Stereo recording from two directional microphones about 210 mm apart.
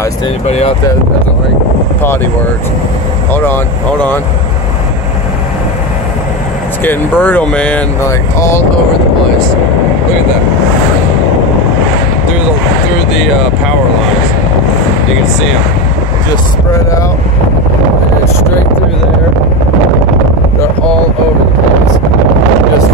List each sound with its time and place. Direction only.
0.5 s speech: 30° left (ahead or behind)
3.3 s speech: 10° left (ahead or behind)
6.8 s speech: 10° left (ahead or behind)